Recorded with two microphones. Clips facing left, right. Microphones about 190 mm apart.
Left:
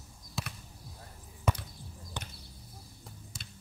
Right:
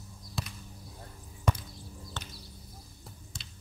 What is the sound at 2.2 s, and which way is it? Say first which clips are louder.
Basketball bounce: left 2 dB; 15° left (ahead or behind).